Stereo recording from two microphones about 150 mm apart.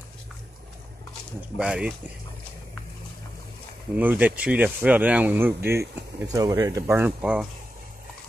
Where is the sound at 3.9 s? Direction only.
10° right (ahead or behind).